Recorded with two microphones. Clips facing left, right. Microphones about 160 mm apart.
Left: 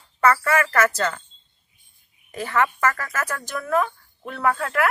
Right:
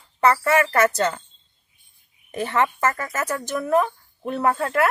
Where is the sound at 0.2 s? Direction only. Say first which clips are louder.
Right 1 dB; 20° right (ahead or behind).